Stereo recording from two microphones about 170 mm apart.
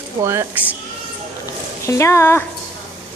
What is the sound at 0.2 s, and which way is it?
Speech, 15° right (ahead or behind).